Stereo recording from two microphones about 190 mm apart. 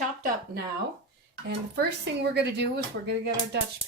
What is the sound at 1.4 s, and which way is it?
Speech, 60° right (ahead or behind).